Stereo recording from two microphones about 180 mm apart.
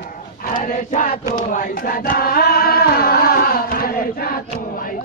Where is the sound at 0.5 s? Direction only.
45° left (ahead or behind).